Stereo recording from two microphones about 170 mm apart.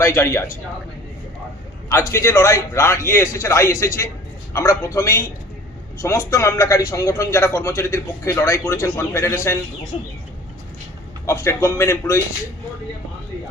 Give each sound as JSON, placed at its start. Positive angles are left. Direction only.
{"t": 0.0, "sound": "a man's voice", "side_deg": 15}
{"t": 1.9, "sound": "a man's voice", "side_deg": 15}
{"t": 9.9, "sound": "a sound", "side_deg": 35}
{"t": 11.3, "sound": "a man's voice", "side_deg": 15}